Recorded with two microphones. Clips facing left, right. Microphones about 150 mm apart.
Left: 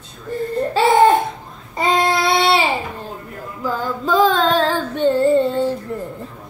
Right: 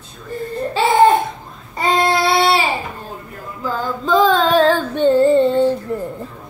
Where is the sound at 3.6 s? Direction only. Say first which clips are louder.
Even; 5° left (ahead or behind).